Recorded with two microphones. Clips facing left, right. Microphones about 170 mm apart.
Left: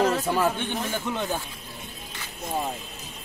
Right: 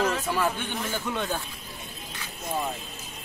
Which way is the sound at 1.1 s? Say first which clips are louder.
Even; 15° left (ahead or behind).